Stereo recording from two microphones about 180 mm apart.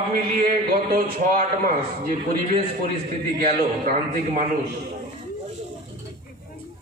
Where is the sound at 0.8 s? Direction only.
50° right (ahead or behind).